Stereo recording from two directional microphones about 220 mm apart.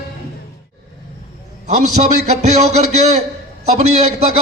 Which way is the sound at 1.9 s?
30° right (ahead or behind).